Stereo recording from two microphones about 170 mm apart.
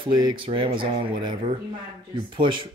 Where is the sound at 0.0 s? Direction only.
25° right (ahead or behind).